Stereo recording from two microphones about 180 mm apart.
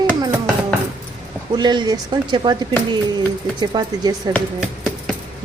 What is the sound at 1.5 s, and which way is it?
Speech, 25° right (ahead or behind).